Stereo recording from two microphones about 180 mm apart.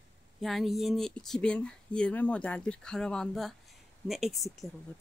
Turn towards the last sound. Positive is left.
turn(degrees=0)  # may be behind; listen again after turning